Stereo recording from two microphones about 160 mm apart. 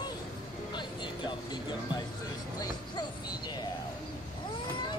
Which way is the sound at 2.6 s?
25° left (ahead or behind).